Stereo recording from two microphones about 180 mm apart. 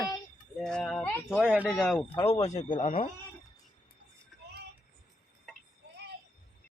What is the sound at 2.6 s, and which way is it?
Speech, 45° left (ahead or behind).